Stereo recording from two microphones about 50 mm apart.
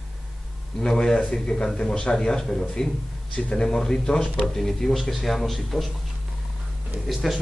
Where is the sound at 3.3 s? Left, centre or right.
Left.